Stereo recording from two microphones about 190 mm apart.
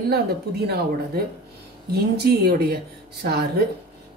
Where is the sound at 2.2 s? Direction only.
55° right (ahead or behind).